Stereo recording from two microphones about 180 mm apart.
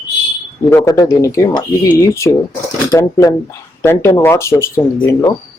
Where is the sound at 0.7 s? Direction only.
20° left (ahead or behind).